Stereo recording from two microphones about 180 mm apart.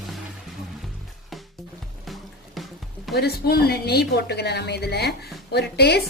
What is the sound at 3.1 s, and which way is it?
A woman's voice, 60° left (ahead or behind).